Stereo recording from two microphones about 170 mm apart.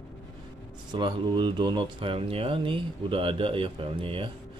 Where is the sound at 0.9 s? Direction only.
25° right (ahead or behind).